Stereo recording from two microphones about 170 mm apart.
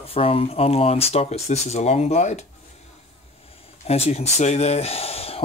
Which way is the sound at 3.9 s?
40° left (ahead or behind).